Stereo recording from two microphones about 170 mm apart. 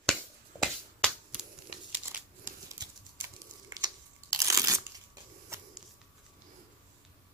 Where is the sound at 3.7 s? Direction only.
20° right (ahead or behind).